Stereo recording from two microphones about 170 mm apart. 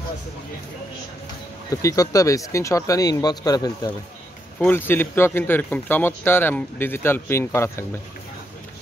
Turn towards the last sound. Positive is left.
turn(degrees=15)  # may be behind; listen again after turning